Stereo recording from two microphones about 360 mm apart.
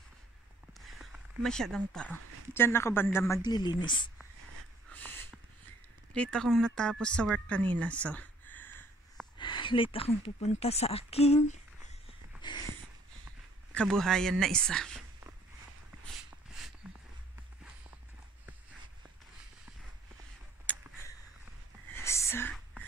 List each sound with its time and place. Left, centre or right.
0.7 s speech: centre
4.9 s snort: centre
6.1 s speech: centre
7.8 s a sound: centre
9.4 s speech: centre
13.7 s speech: centre
16.8 s a sound: centre
20.7 s a sound: centre
21.9 s whispering: centre